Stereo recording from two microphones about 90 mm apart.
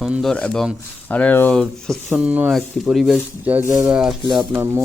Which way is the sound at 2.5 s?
5° right (ahead or behind).